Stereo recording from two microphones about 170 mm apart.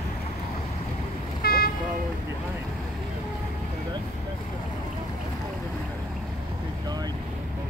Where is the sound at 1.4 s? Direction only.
65° left (ahead or behind).